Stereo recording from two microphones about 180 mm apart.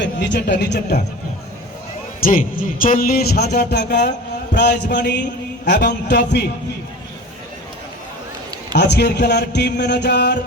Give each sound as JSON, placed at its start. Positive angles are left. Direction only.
{"t": 0.0, "sound": "speech", "side_deg": 70}
{"t": 2.2, "sound": "speech", "side_deg": 50}
{"t": 8.9, "sound": "speech", "side_deg": 70}